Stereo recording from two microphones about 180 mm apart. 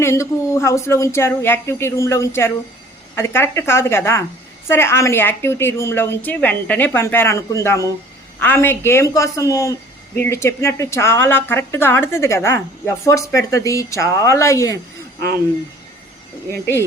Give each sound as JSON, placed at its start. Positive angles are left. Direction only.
{"t": 0.0, "sound": "a woman's voice", "side_deg": 15}